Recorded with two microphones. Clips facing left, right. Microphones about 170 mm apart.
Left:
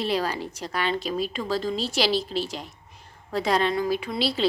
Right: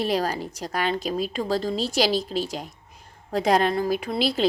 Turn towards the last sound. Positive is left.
turn(degrees=-45)  # may be behind; listen again after turning